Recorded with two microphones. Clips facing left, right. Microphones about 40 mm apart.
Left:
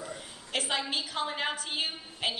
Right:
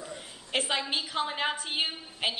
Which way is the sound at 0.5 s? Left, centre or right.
Right.